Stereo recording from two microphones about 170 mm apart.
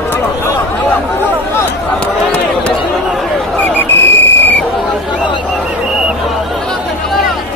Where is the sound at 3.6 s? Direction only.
10° left (ahead or behind).